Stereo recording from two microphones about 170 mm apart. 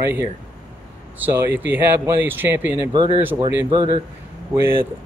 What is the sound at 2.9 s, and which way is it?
Speech, 25° right (ahead or behind).